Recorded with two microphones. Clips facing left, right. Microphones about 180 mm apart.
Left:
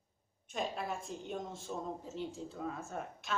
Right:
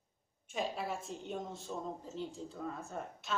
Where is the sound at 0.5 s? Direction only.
5° right (ahead or behind).